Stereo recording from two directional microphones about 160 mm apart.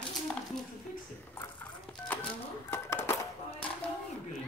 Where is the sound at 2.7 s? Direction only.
15° left (ahead or behind).